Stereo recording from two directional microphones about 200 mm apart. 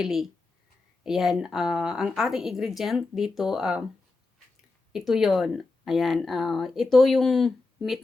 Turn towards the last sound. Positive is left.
turn(degrees=0)  # may be behind; listen again after turning